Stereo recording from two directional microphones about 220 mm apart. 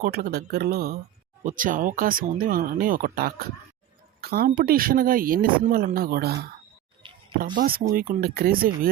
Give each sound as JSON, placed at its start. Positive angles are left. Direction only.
{"t": 0.0, "sound": "speech", "side_deg": -45}
{"t": 7.0, "sound": "a sound", "side_deg": -20}
{"t": 7.5, "sound": "speech", "side_deg": -40}